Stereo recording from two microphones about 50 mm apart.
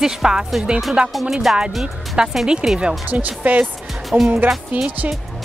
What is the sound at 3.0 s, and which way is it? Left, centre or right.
Speech, right.